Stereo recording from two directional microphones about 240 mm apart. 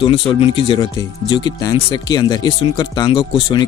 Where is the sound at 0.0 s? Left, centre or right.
Left.